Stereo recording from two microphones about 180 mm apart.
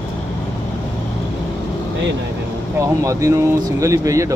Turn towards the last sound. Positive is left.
turn(degrees=-20)  # may be behind; listen again after turning